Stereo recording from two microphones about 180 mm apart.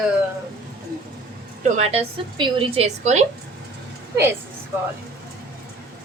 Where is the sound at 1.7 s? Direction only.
35° right (ahead or behind).